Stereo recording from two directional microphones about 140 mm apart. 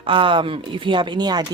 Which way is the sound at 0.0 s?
40° right (ahead or behind).